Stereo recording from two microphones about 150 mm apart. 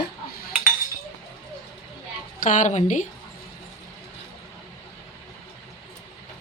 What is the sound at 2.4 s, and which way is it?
Speech, 60° left (ahead or behind).